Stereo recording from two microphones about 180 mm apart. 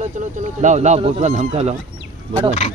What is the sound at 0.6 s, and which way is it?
Speech, 40° right (ahead or behind).